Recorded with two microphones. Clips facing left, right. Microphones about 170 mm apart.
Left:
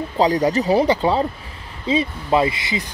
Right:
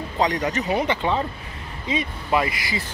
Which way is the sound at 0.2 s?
35° left (ahead or behind).